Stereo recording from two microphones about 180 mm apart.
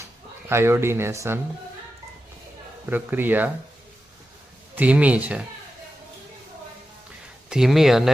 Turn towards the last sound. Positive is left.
turn(degrees=0)  # may be behind; listen again after turning